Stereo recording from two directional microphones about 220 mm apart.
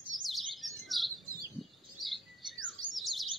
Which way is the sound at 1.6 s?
Centre (ahead or behind).